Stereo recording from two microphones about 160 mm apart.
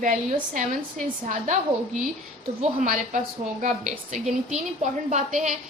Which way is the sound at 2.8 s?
50° right (ahead or behind).